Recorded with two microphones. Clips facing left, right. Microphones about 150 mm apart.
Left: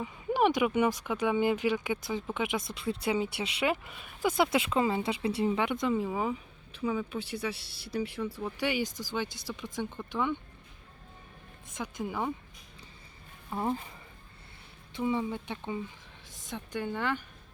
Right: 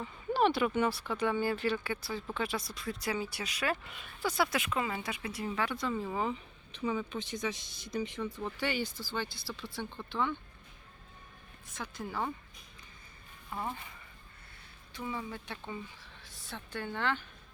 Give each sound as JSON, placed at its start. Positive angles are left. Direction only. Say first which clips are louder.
{"t": 0.0, "sound": "speech", "louder": "left 2 dB", "side_deg": 15}
{"t": 11.7, "sound": "speech", "louder": "left 4 dB", "side_deg": 15}
{"t": 13.5, "sound": "speech", "louder": "left 7 dB", "side_deg": 25}
{"t": 14.9, "sound": "speech", "louder": "left 8 dB", "side_deg": 25}